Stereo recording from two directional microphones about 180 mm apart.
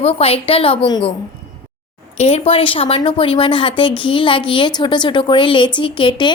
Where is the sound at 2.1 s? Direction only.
35° left (ahead or behind).